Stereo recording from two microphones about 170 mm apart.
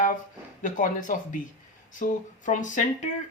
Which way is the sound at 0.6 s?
50° left (ahead or behind).